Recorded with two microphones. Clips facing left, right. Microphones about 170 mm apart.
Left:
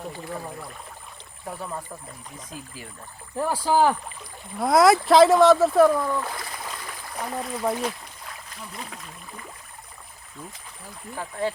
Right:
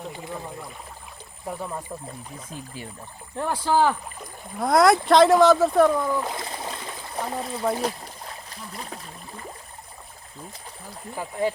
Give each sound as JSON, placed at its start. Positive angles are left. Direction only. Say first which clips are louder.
{"t": 3.3, "sound": "speech", "louder": "left 1 dB", "side_deg": 10}
{"t": 4.6, "sound": "speech", "louder": "left 1 dB", "side_deg": 0}
{"t": 6.1, "sound": "speech", "louder": "right 2 dB", "side_deg": -20}
{"t": 7.8, "sound": "a sound", "louder": "right 2 dB", "side_deg": -35}
{"t": 11.2, "sound": "speech", "louder": "right 2 dB", "side_deg": -15}